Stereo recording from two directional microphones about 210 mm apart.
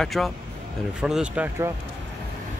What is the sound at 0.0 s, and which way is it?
Speech, centre (ahead or behind).